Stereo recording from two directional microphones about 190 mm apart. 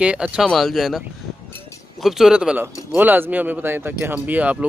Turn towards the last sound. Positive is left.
turn(degrees=-5)  # may be behind; listen again after turning